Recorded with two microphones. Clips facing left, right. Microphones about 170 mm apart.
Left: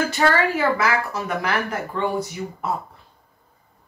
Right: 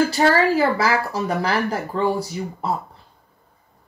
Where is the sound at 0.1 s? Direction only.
35° right (ahead or behind).